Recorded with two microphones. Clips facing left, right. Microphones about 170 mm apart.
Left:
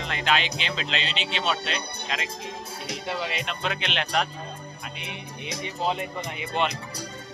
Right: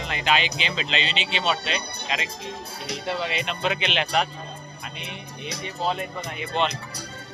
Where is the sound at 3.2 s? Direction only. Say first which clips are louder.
Right 3 dB; centre (ahead or behind).